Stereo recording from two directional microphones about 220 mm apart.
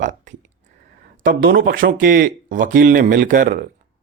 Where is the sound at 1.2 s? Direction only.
45° right (ahead or behind).